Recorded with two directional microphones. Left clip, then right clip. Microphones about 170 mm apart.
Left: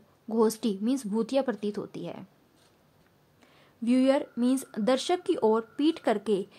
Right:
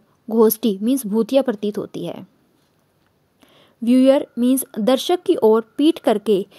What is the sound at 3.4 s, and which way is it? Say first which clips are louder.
A woman's voice: right 9 dB; 40° right (ahead or behind).